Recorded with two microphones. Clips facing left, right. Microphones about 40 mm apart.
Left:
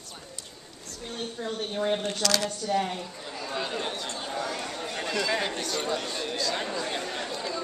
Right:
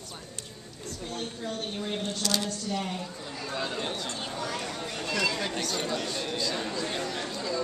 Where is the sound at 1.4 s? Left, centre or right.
Left.